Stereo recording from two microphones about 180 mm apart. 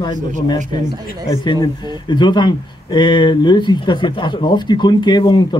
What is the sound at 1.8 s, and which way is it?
Speech, 25° left (ahead or behind).